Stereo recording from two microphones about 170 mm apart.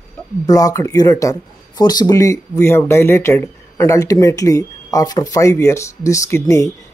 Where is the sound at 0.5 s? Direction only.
20° left (ahead or behind).